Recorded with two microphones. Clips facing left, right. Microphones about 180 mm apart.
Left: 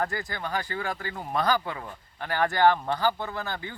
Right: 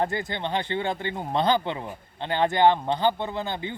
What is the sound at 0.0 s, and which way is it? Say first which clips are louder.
Speech: right 4 dB; 25° right (ahead or behind).